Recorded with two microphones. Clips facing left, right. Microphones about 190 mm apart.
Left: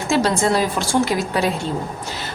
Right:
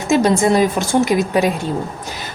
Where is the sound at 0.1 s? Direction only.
15° right (ahead or behind).